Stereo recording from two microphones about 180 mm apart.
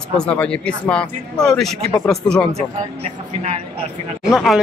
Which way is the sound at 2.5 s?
35° right (ahead or behind).